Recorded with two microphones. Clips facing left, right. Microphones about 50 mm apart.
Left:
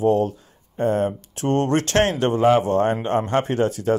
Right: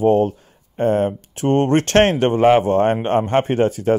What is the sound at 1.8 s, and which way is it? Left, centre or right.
Speech, right.